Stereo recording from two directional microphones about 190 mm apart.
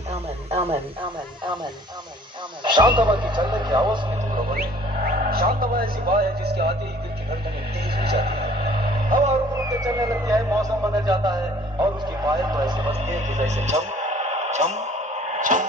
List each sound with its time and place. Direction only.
0.1 s radio: 30° right (ahead or behind)
2.6 s speech: 25° right (ahead or behind)
4.6 s speech: 50° right (ahead or behind)
8.0 s music: 55° right (ahead or behind)
9.8 s speech: 20° right (ahead or behind)
13.0 s radio: 40° right (ahead or behind)